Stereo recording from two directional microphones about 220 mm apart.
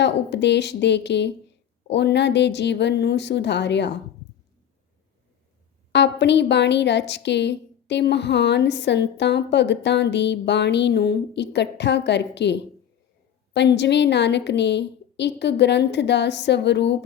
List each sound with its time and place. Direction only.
0.0 s a woman's voice: 50° left (ahead or behind)
5.9 s a woman's voice: 50° left (ahead or behind)